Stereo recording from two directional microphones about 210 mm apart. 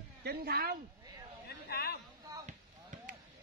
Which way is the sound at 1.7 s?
50° left (ahead or behind).